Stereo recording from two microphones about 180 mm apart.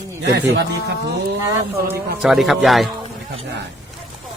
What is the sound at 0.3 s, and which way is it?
Speech, 70° right (ahead or behind).